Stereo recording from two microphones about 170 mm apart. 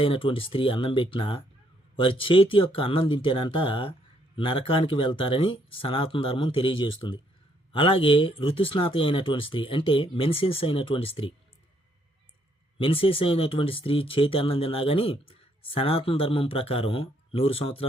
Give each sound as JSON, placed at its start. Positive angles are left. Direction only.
{"t": 0.0, "sound": "speech", "side_deg": 30}
{"t": 12.8, "sound": "speech", "side_deg": 30}